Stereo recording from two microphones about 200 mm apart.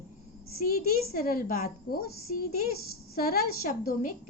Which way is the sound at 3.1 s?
50° left (ahead or behind).